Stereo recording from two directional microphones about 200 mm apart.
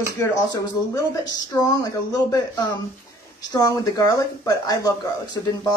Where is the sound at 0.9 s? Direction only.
20° left (ahead or behind).